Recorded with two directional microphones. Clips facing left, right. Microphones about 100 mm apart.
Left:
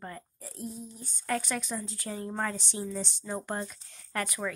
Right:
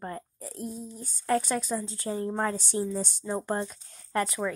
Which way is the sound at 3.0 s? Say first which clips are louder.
Right 4 dB; 45° right (ahead or behind).